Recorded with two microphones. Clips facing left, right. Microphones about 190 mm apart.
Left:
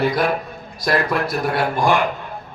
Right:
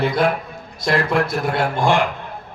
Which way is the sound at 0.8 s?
25° right (ahead or behind).